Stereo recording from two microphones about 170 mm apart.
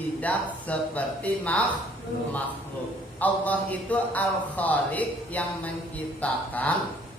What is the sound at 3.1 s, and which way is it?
A man's voice, 10° left (ahead or behind).